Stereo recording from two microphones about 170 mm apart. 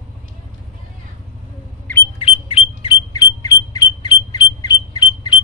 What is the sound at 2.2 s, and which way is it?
Squawk, 35° left (ahead or behind).